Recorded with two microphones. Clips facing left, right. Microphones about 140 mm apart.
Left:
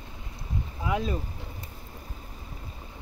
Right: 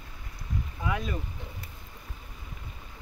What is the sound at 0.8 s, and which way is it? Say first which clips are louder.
Speech: left 4 dB; 25° left (ahead or behind).